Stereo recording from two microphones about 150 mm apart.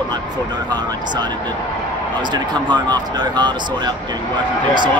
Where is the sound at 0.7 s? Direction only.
30° right (ahead or behind).